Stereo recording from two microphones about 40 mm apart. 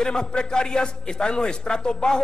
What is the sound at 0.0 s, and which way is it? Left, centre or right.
A man's voice, left.